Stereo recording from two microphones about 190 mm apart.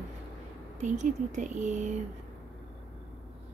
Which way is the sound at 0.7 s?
40° right (ahead or behind).